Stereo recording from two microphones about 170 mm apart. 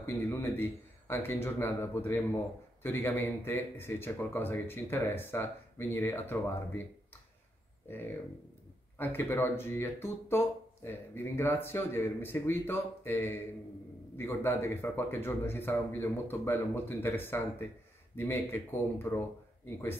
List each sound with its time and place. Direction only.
0.0 s speech: 15° left (ahead or behind)
8.9 s speech: 10° left (ahead or behind)